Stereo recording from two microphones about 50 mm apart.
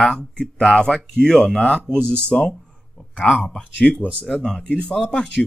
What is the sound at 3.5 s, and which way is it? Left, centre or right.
Speech, centre.